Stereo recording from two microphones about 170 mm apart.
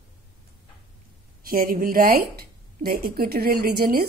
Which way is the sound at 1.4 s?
55° right (ahead or behind).